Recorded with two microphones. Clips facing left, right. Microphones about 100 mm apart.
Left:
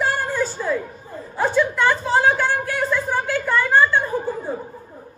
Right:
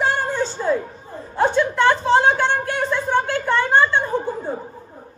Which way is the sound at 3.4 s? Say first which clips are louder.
Left 2 dB; centre (ahead or behind).